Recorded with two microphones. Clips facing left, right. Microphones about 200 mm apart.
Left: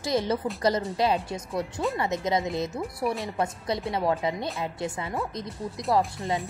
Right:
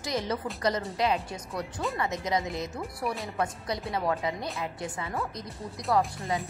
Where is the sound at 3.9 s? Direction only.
25° left (ahead or behind).